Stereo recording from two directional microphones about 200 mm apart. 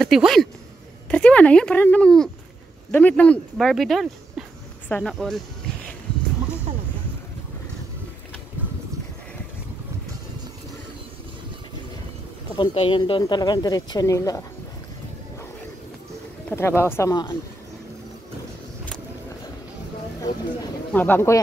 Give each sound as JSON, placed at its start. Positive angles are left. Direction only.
{"t": 0.0, "sound": "speech", "side_deg": 0}
{"t": 12.5, "sound": "speech", "side_deg": 25}
{"t": 16.4, "sound": "speech", "side_deg": 10}
{"t": 20.9, "sound": "speech", "side_deg": 10}